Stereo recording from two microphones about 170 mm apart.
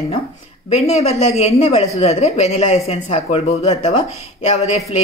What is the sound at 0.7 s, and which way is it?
Speech, 40° left (ahead or behind).